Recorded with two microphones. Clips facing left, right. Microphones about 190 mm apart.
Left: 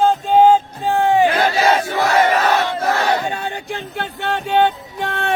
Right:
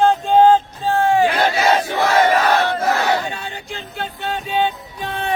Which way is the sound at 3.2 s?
50° left (ahead or behind).